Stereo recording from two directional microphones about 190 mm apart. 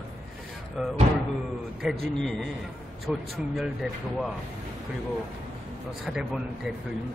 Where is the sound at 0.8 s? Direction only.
Centre (ahead or behind).